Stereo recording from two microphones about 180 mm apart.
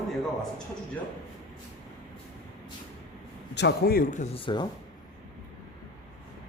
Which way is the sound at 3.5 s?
70° left (ahead or behind).